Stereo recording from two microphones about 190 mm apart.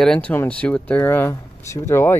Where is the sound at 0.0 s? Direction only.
5° left (ahead or behind).